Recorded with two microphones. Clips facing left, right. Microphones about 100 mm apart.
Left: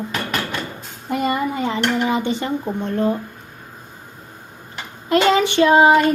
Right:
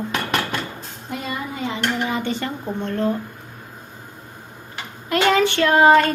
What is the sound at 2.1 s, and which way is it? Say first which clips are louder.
Speech: left 4 dB; 20° left (ahead or behind).